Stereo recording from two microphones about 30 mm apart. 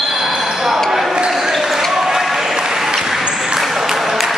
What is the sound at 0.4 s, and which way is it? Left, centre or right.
Basketball bounce, centre.